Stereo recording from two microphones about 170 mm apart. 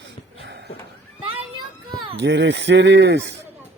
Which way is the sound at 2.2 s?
90° right.